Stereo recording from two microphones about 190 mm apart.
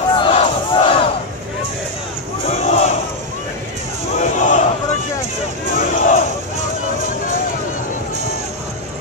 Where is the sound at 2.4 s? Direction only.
35° left (ahead or behind).